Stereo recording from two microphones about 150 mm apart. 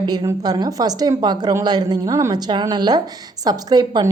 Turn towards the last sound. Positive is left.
turn(degrees=-30)  # may be behind; listen again after turning